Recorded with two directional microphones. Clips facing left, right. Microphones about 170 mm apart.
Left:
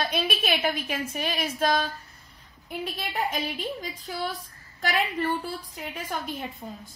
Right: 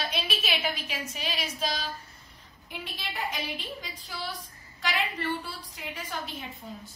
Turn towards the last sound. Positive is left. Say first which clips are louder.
# left 4 dB
turn(degrees=50)  # may be behind; listen again after turning